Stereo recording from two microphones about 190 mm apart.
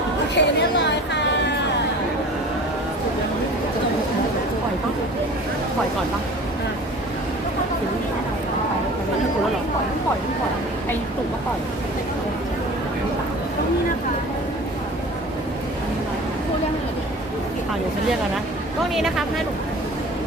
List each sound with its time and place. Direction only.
0.3 s chatter: 65° left (ahead or behind)
18.9 s speech: centre (ahead or behind)